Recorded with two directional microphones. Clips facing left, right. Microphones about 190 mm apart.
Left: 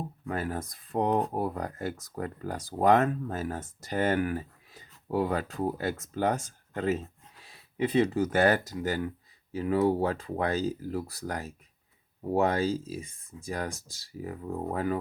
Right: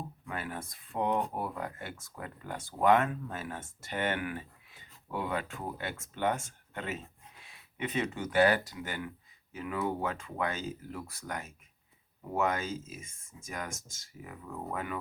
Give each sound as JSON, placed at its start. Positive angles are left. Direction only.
{"t": 0.3, "sound": "speech", "side_deg": 40}